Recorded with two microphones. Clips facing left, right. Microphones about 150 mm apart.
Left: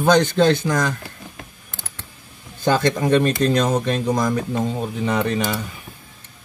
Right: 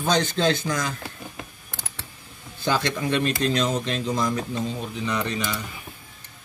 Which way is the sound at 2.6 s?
45° left (ahead or behind).